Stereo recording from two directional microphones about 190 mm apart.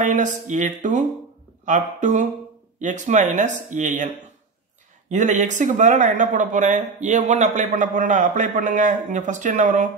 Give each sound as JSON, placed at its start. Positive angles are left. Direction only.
{"t": 0.0, "sound": "speech", "side_deg": -40}
{"t": 5.1, "sound": "speech", "side_deg": -40}